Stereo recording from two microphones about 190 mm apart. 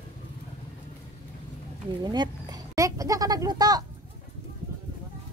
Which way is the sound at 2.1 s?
20° right (ahead or behind).